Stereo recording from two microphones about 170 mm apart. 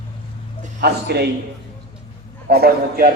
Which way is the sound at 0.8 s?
70° right (ahead or behind).